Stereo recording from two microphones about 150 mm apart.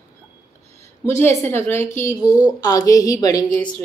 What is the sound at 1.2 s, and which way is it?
A woman's voice, 15° left (ahead or behind).